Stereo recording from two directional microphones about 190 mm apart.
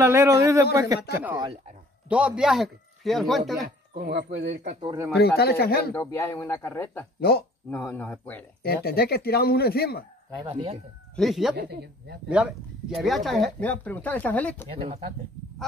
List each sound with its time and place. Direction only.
0.0 s a man's voice: 15° right (ahead or behind)
2.0 s speech: 5° right (ahead or behind)
3.6 s speech: 55° right (ahead or behind)
4.6 s speech: 35° right (ahead or behind)
5.1 s speech: 55° left (ahead or behind)
5.9 s speech: 15° left (ahead or behind)
7.2 s speech: 55° left (ahead or behind)
7.7 s speech: 10° left (ahead or behind)
8.6 s speech: 55° left (ahead or behind)
10.4 s speech: 35° right (ahead or behind)
11.1 s speech: centre (ahead or behind)
11.5 s speech: 60° right (ahead or behind)
12.3 s speech: 5° right (ahead or behind)